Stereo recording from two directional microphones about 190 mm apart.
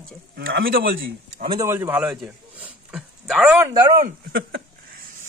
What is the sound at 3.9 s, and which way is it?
Speech, 50° right (ahead or behind).